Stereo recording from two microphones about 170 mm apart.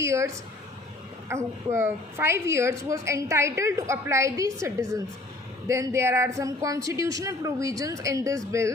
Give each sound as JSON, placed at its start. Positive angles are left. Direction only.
{"t": 0.0, "sound": "a woman's voice", "side_deg": -15}
{"t": 1.3, "sound": "a woman's voice", "side_deg": -15}